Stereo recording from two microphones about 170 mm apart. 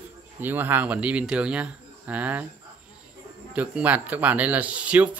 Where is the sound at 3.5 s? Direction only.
10° right (ahead or behind).